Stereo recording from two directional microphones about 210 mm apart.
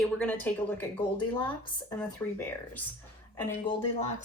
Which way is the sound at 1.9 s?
10° left (ahead or behind).